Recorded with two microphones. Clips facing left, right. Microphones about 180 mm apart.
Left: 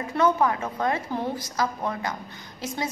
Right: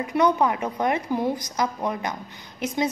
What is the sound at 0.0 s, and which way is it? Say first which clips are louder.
A woman's voice: right 1 dB; 15° right (ahead or behind).